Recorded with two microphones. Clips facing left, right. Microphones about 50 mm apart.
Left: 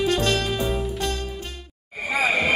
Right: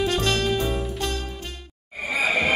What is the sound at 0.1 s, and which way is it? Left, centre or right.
Music, centre.